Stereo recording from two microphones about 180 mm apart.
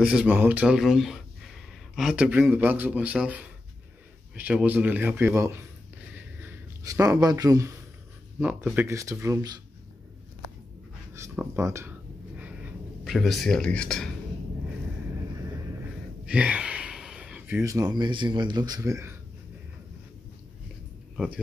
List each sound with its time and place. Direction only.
0.0 s speech: 5° right (ahead or behind)
6.1 s a sound: 10° right (ahead or behind)
8.4 s speech: 5° right (ahead or behind)
11.1 s speech: 15° right (ahead or behind)
13.0 s speech: centre (ahead or behind)
16.3 s gasp: 5° right (ahead or behind)
17.6 s speech: 20° right (ahead or behind)